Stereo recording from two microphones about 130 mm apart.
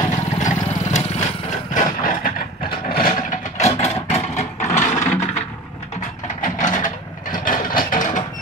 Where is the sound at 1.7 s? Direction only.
90° left.